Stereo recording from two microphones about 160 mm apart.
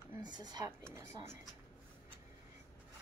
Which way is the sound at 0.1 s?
25° right (ahead or behind).